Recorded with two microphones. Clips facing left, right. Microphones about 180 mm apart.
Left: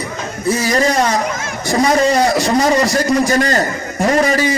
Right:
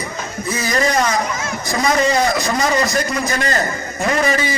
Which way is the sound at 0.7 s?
35° left (ahead or behind).